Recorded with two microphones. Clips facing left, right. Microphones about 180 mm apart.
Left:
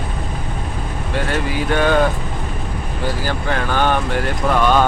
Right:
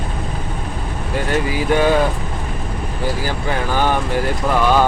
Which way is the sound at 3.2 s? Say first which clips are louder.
Even; 10° right (ahead or behind).